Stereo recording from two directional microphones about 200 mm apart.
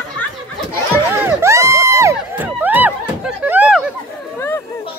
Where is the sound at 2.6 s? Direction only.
10° right (ahead or behind).